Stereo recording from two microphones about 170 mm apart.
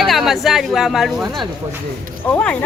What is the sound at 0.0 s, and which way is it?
Speech, centre (ahead or behind).